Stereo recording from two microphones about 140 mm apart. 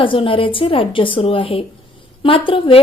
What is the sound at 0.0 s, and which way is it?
A woman's voice, 40° left (ahead or behind).